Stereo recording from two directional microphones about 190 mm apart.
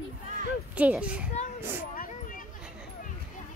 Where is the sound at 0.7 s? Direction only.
5° right (ahead or behind).